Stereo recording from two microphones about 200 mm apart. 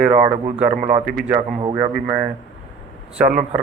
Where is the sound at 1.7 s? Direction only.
15° right (ahead or behind).